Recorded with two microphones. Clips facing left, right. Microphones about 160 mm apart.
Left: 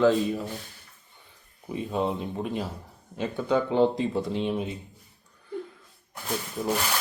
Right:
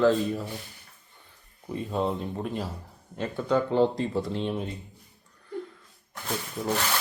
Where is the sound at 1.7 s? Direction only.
5° left (ahead or behind).